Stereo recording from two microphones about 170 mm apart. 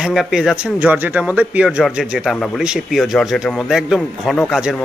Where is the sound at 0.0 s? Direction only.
5° right (ahead or behind).